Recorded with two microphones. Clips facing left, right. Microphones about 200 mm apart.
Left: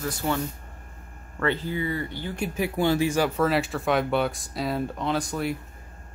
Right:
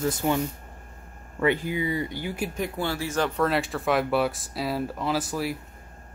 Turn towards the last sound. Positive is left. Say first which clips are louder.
# even
turn(degrees=-5)  # may be behind; listen again after turning